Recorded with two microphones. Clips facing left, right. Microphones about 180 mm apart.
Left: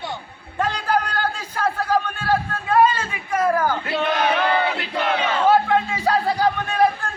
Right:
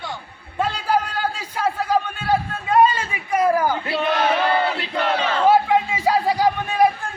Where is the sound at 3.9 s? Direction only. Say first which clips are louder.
Even; 5° right (ahead or behind).